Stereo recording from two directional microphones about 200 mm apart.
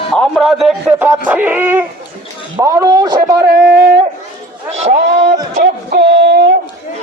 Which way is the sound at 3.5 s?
55° right (ahead or behind).